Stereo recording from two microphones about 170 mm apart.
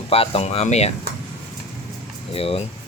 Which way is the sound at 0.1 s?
35° left (ahead or behind).